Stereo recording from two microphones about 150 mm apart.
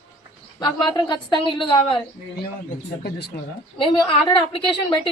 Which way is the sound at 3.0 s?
90° left.